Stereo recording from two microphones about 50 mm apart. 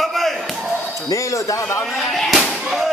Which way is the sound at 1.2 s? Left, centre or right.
Left.